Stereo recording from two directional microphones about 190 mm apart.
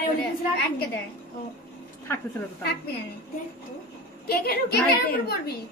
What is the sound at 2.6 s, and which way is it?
Speech, 60° left (ahead or behind).